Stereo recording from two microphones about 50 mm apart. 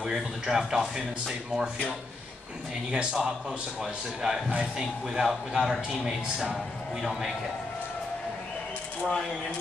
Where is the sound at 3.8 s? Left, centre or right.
Centre.